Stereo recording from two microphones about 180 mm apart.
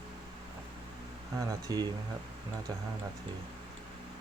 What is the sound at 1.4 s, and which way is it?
Speech, 20° right (ahead or behind).